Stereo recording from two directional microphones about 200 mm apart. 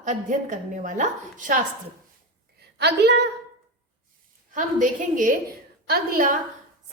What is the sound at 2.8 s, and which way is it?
Speech, 55° right (ahead or behind).